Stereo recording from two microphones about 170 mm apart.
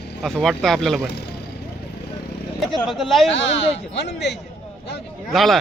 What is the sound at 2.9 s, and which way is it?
Speech, centre (ahead or behind).